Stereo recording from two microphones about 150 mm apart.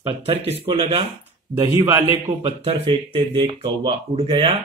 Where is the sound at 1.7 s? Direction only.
15° right (ahead or behind).